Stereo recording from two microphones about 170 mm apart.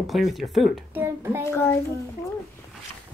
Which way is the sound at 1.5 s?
15° left (ahead or behind).